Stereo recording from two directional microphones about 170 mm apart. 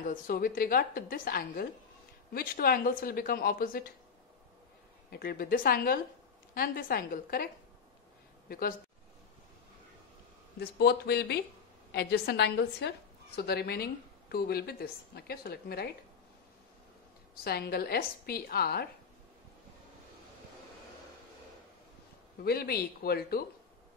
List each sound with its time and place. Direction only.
0.0 s a woman's voice: 55° left (ahead or behind)
5.1 s a woman's voice: 65° left (ahead or behind)
8.5 s a woman's voice: 60° left (ahead or behind)
10.6 s speech: 70° left (ahead or behind)
17.4 s a woman's voice: 65° left (ahead or behind)
22.4 s a woman's voice: 65° left (ahead or behind)